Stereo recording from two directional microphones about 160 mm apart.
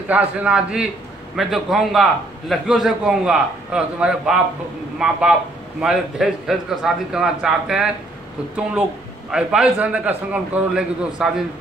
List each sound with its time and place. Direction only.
0.1 s a man's voice: 5° right (ahead or behind)
9.3 s a man's voice: 5° right (ahead or behind)